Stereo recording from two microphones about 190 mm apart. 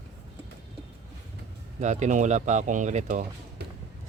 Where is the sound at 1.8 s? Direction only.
40° right (ahead or behind).